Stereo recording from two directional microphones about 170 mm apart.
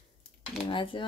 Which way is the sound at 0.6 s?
30° left (ahead or behind).